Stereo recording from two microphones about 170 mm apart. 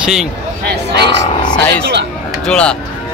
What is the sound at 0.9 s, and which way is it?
Speech, 80° right.